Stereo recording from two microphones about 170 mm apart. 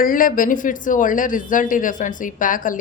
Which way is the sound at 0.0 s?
55° left (ahead or behind).